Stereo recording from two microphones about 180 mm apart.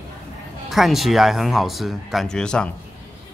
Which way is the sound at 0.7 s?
Centre (ahead or behind).